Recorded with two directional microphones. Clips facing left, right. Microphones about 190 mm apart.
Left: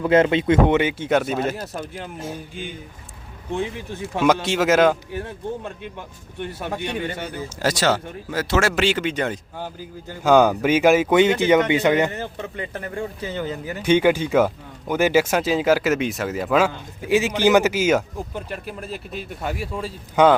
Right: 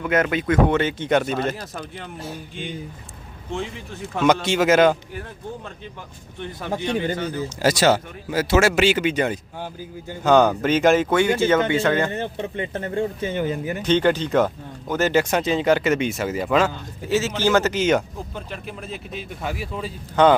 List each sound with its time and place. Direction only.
0.0 s speech: 30° left (ahead or behind)
0.8 s speech: 10° left (ahead or behind)
3.6 s speech: 10° left (ahead or behind)
5.1 s speech: 20° left (ahead or behind)
6.7 s speech: centre (ahead or behind)
7.6 s speech: 10° right (ahead or behind)
10.2 s speech: 10° left (ahead or behind)
12.1 s speech: 25° right (ahead or behind)
13.3 s speech: 20° right (ahead or behind)
13.8 s speech: 10° left (ahead or behind)